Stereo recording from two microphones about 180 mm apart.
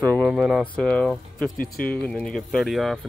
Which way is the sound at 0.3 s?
5° right (ahead or behind).